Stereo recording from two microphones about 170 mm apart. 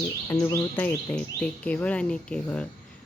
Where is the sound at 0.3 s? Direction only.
20° left (ahead or behind).